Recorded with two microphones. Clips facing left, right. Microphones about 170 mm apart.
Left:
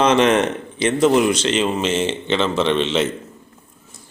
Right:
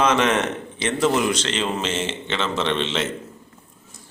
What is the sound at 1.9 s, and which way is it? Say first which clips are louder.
Speech: left 6 dB; 30° left (ahead or behind).